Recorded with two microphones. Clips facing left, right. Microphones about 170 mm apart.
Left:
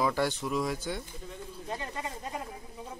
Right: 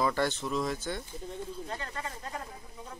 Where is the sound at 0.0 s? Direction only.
10° left (ahead or behind).